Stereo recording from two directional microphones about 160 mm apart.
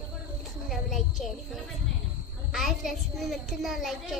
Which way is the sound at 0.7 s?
Centre (ahead or behind).